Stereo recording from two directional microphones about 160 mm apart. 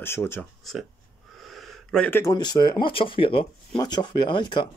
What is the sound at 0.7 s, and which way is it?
Speech, centre (ahead or behind).